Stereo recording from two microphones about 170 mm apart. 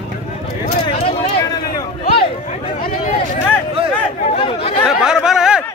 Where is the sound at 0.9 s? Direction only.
35° left (ahead or behind).